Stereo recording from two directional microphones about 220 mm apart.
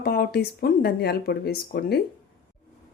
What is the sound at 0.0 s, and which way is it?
Speech, 45° left (ahead or behind).